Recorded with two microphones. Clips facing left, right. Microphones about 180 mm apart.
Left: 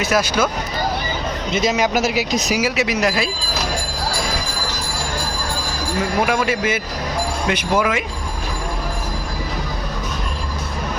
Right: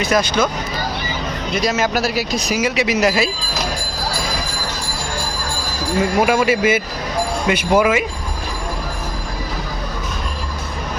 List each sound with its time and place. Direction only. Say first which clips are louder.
0.0 s speech: right 1 dB; 5° left (ahead or behind)
1.5 s speech: left 1 dB; 20° left (ahead or behind)
2.6 s speech: right 5 dB; 5° left (ahead or behind)
6.1 s speech: right 3 dB; 5° right (ahead or behind)